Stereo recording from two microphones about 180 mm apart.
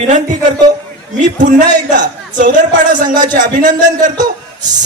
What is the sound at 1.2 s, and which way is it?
Speech, 45° right (ahead or behind).